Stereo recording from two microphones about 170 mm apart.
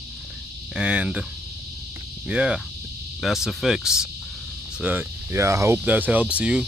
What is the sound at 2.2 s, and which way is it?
Speech, 5° right (ahead or behind).